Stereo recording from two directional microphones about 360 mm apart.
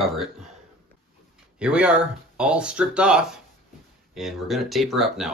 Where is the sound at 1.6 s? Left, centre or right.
Centre.